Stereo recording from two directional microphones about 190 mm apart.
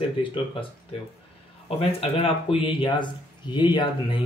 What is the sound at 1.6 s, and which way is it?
Speech, 30° left (ahead or behind).